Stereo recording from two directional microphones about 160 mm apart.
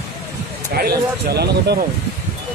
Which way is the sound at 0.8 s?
85° right.